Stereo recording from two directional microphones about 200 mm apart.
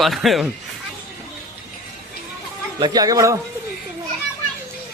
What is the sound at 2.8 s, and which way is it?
Speech, 20° right (ahead or behind).